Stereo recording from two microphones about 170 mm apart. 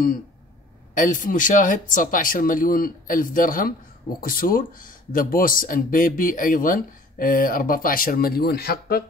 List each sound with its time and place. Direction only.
0.9 s speech: 50° left (ahead or behind)